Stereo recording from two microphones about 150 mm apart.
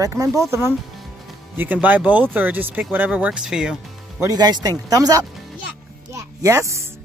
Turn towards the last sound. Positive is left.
turn(degrees=-20)  # may be behind; listen again after turning